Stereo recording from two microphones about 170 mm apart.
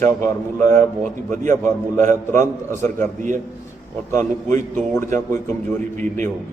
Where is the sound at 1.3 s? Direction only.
45° right (ahead or behind).